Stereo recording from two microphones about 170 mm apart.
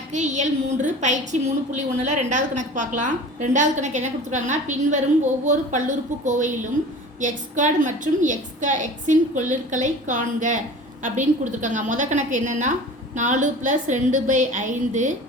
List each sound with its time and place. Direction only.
0.1 s a woman's voice: 45° right (ahead or behind)